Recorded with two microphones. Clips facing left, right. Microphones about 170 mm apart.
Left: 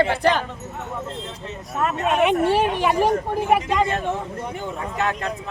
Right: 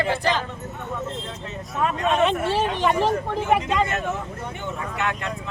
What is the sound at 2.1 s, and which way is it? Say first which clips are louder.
Speech: left 5 dB; 15° left (ahead or behind).